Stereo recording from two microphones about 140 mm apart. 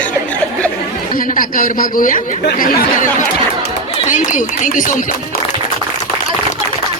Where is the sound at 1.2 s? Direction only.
80° left.